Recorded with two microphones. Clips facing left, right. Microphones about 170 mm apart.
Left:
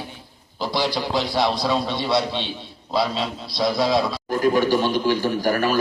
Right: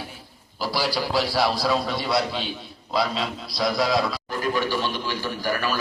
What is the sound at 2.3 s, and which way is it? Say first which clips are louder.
Speech: left 2 dB; 25° left (ahead or behind).